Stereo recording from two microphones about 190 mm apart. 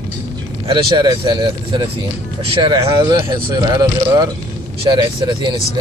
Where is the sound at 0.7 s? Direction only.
25° right (ahead or behind).